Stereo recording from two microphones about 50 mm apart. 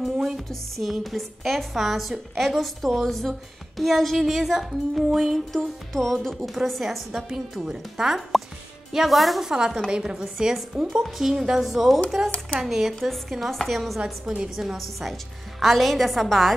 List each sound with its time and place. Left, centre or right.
0.0 s a woman's voice: centre
9.8 s a woman's voice: centre